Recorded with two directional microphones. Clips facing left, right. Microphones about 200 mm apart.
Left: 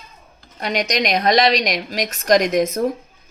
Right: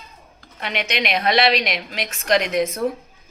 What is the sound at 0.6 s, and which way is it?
Speech, 40° left (ahead or behind).